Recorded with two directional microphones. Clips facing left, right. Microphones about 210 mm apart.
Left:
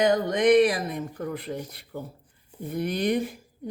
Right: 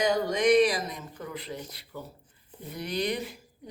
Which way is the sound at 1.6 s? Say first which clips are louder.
Left 4 dB; 55° left (ahead or behind).